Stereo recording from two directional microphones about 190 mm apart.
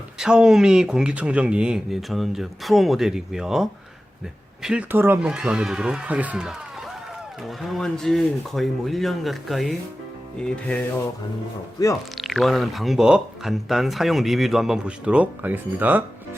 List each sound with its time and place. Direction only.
0.2 s speech: 5° right (ahead or behind)
11.8 s speech: 20° left (ahead or behind)
12.1 s speech: centre (ahead or behind)